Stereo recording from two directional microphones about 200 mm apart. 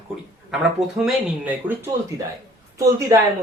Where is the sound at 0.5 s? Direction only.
5° right (ahead or behind).